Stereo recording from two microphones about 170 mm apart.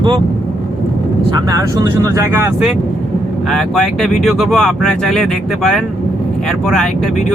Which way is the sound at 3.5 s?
Centre (ahead or behind).